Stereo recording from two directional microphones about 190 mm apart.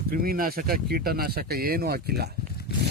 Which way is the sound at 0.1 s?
50° right (ahead or behind).